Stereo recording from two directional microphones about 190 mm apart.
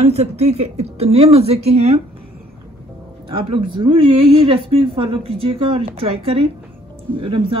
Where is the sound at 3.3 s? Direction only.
30° right (ahead or behind).